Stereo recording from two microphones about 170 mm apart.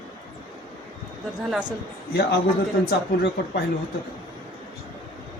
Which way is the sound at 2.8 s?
65° left (ahead or behind).